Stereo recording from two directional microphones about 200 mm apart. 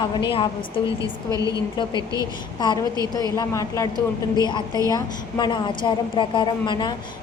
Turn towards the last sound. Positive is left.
turn(degrees=25)  # may be behind; listen again after turning